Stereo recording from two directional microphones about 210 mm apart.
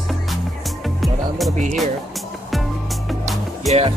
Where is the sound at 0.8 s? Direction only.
Centre (ahead or behind).